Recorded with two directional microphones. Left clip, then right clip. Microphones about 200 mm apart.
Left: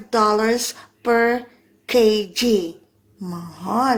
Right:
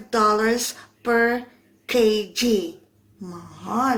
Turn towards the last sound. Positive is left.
turn(degrees=30)  # may be behind; listen again after turning